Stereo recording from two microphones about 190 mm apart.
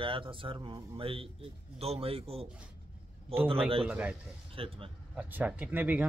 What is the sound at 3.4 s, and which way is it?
Speech, 30° right (ahead or behind).